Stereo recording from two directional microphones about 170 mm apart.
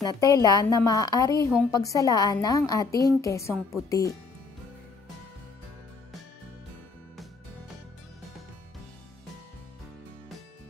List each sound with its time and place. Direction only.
0.0 s a woman's voice: 20° left (ahead or behind)